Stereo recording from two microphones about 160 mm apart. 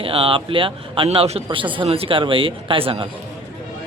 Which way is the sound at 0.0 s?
35° right (ahead or behind).